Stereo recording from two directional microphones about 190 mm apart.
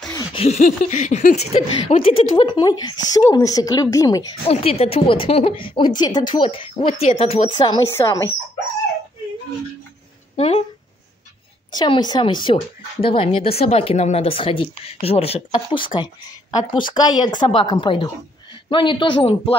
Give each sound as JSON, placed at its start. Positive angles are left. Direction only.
{"t": 0.1, "sound": "speech", "side_deg": 30}
{"t": 4.5, "sound": "speech", "side_deg": 30}
{"t": 10.3, "sound": "speech", "side_deg": 30}
{"t": 11.7, "sound": "speech", "side_deg": 20}